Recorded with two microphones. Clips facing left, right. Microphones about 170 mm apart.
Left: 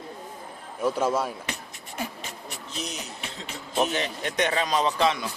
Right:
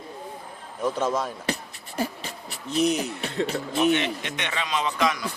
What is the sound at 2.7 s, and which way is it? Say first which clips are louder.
Speech: right 14 dB; 60° right (ahead or behind).